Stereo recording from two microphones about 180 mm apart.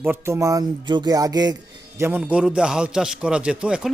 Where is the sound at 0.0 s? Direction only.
15° right (ahead or behind).